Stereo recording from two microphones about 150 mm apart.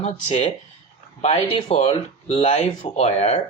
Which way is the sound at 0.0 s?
50° left (ahead or behind).